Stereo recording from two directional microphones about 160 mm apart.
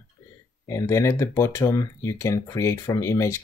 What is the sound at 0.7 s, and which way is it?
Speech, 15° left (ahead or behind).